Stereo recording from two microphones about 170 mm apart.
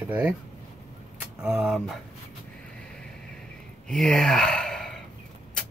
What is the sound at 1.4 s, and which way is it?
Speech, 5° right (ahead or behind).